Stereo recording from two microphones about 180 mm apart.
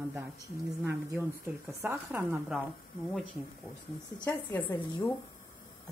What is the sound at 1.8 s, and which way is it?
Speech, 15° right (ahead or behind).